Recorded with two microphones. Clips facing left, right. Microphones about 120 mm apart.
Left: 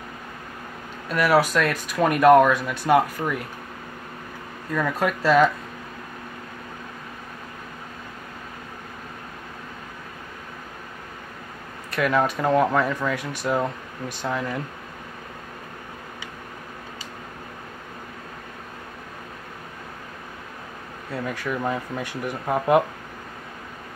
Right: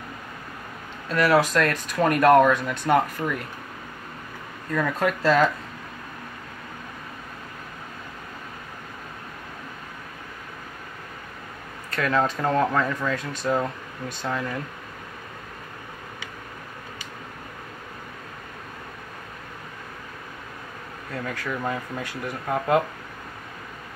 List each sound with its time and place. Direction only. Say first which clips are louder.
1.1 s speech: even; 5° left (ahead or behind)
4.7 s speech: even; 5° left (ahead or behind)
11.9 s speech: left 2 dB; 15° left (ahead or behind)
21.1 s speech: left 2 dB; 15° left (ahead or behind)